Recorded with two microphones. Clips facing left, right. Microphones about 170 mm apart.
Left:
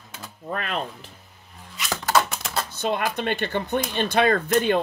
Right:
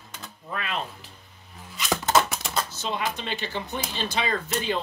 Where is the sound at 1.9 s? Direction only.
25° right (ahead or behind).